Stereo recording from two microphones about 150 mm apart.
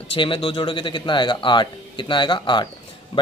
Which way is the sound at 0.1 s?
35° left (ahead or behind).